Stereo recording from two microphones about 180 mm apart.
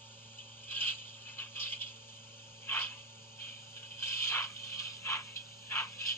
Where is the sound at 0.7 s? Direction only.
10° left (ahead or behind).